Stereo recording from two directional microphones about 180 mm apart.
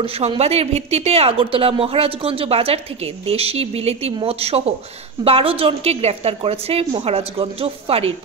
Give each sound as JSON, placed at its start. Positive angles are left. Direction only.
{"t": 0.0, "sound": "a woman's voice", "side_deg": -35}